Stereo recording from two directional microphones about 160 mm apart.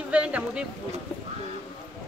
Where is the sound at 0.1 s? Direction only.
10° right (ahead or behind).